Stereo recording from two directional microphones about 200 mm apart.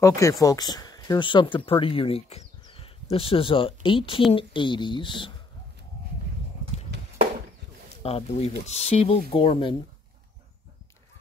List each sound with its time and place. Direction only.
0.0 s speech: 15° left (ahead or behind)
8.0 s speech: 30° left (ahead or behind)